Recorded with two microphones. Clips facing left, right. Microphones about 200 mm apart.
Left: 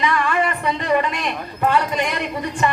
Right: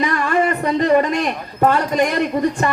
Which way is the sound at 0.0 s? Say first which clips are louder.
Right 2 dB; 40° right (ahead or behind).